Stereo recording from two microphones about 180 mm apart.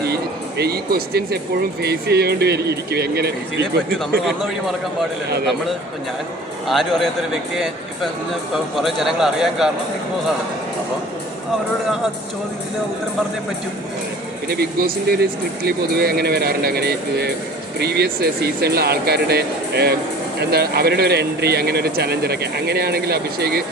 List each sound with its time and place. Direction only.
0.0 s music: 65° right (ahead or behind)
1.8 s speech: 65° right (ahead or behind)
6.7 s a man's voice: centre (ahead or behind)
14.4 s speech: 60° right (ahead or behind)